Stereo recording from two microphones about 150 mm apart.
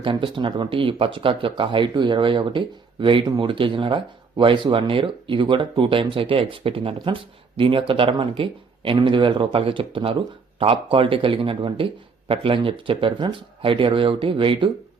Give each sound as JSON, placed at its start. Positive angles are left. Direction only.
{"t": 0.0, "sound": "speech", "side_deg": -35}